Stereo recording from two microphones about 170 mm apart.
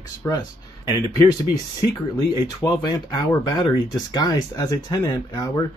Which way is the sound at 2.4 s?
25° left (ahead or behind).